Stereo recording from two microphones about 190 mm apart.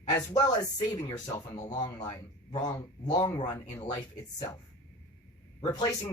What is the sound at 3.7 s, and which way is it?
Speech, 35° left (ahead or behind).